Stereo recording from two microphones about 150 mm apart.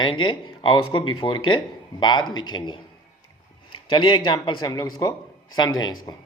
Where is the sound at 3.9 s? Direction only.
30° left (ahead or behind).